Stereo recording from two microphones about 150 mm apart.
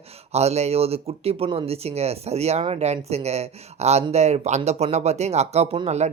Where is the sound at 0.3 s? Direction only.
45° right (ahead or behind).